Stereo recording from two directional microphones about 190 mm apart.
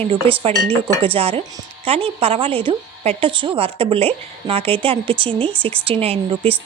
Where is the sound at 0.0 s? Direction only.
30° right (ahead or behind).